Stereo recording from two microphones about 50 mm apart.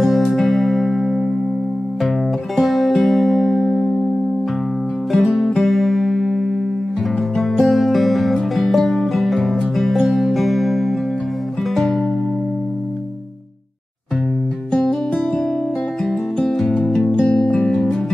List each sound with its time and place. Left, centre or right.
0.0 s music: centre
5.1 s music: centre
14.8 s guitar: centre
16.1 s music: centre
17.3 s music: centre